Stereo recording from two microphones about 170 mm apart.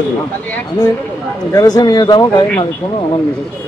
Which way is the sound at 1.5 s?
20° left (ahead or behind).